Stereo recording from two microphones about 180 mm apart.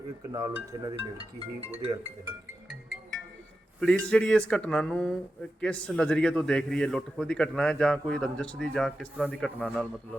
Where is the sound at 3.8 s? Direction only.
5° left (ahead or behind).